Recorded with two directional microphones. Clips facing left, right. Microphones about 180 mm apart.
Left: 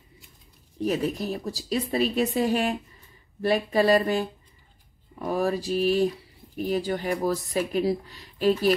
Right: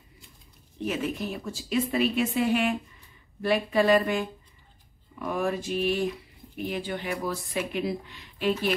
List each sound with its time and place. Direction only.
0.7 s speech: 40° left (ahead or behind)